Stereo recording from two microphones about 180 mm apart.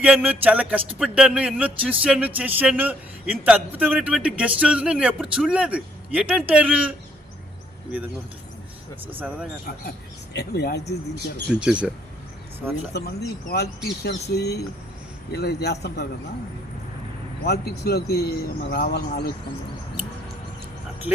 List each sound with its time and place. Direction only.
0.0 s speech: 5° right (ahead or behind)
9.1 s speech: 10° right (ahead or behind)
10.3 s speech: 65° left (ahead or behind)
11.5 s speech: 5° right (ahead or behind)
12.9 s speech: 60° left (ahead or behind)
17.4 s speech: 65° left (ahead or behind)